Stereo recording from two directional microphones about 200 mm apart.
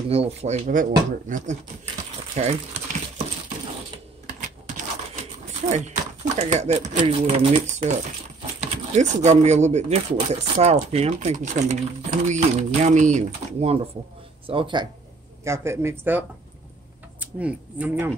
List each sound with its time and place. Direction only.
0.1 s speech: 30° right (ahead or behind)
4.4 s a sound: 40° right (ahead or behind)
5.5 s speech: 35° right (ahead or behind)
15.4 s speech: 15° right (ahead or behind)